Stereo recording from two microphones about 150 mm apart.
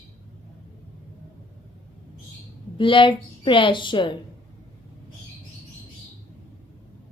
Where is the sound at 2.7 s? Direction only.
35° left (ahead or behind).